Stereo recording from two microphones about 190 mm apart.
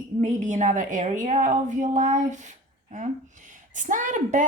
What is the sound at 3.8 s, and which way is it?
Speech, 40° right (ahead or behind).